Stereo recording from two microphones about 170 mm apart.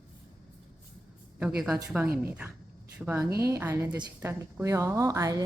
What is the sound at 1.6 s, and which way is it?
A woman's voice, 5° right (ahead or behind).